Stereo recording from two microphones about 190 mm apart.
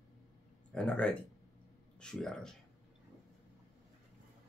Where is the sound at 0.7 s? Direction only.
5° left (ahead or behind).